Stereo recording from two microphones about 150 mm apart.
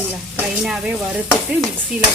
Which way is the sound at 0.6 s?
5° right (ahead or behind).